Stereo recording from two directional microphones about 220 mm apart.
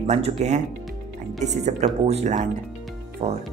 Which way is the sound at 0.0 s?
30° right (ahead or behind).